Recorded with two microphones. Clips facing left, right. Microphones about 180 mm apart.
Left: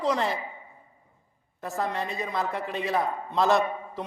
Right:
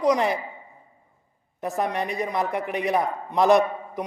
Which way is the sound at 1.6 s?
20° right (ahead or behind).